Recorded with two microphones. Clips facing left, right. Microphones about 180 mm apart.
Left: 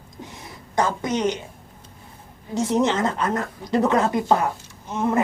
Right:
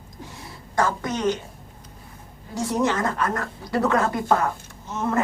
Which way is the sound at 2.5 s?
20° left (ahead or behind).